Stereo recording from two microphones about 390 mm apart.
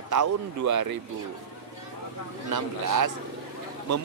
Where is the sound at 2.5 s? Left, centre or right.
Right.